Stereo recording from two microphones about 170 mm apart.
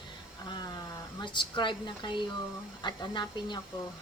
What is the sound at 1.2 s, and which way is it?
Speech, 25° left (ahead or behind).